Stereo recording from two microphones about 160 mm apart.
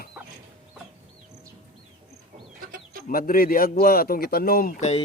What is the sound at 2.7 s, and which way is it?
Chicken, 65° right (ahead or behind).